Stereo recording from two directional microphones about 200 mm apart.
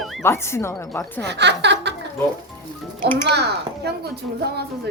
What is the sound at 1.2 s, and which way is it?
Speech, 55° right (ahead or behind).